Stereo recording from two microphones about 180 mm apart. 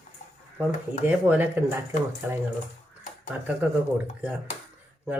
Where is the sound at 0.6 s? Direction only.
10° right (ahead or behind).